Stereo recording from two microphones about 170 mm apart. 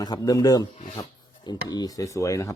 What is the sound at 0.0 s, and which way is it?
Speech, 20° left (ahead or behind).